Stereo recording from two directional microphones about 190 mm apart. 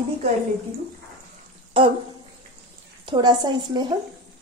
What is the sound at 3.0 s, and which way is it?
Speech, 25° right (ahead or behind).